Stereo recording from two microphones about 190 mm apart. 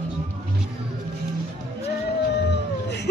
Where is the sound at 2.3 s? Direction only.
65° left (ahead or behind).